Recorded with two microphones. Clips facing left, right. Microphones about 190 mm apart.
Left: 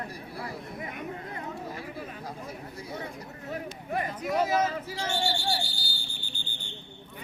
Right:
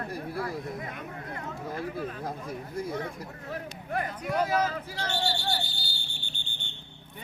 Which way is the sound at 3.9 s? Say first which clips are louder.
Left 1 dB; 5° left (ahead or behind).